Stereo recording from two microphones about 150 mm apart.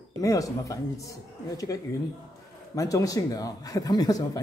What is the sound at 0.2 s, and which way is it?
Speech, 20° left (ahead or behind).